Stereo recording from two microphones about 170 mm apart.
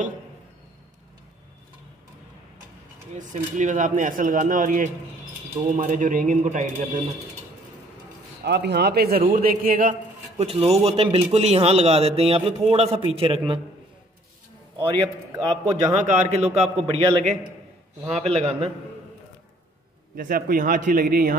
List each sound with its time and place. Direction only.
3.2 s speech: 45° right (ahead or behind)
8.5 s a man's voice: 80° right; by 9.9 s 55° right (ahead or behind)
10.4 s a man's voice: 35° right (ahead or behind)
15.6 s a man's voice: 40° right (ahead or behind)
20.2 s a man's voice: 55° right (ahead or behind)